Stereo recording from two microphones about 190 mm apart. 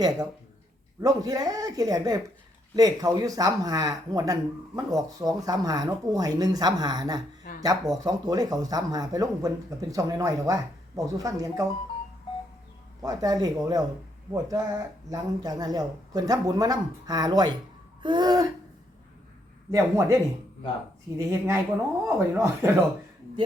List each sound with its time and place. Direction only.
1.0 s speech: 20° right (ahead or behind)
13.0 s speech: 20° right (ahead or behind)
19.7 s speech: 15° right (ahead or behind)